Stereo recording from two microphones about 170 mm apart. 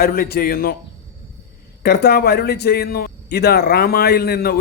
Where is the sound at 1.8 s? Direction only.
70° left (ahead or behind).